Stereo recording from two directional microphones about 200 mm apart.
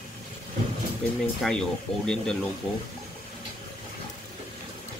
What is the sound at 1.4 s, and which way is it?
Speech, 5° left (ahead or behind).